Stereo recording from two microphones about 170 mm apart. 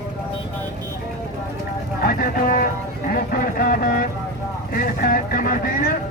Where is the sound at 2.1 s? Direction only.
60° left (ahead or behind).